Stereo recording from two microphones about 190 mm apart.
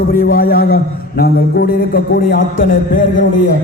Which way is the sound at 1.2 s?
55° left (ahead or behind).